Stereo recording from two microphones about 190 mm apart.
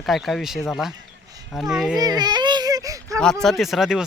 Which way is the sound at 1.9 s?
20° right (ahead or behind).